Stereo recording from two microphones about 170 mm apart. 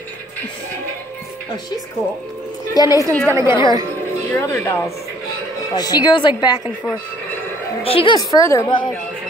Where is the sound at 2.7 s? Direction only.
20° left (ahead or behind).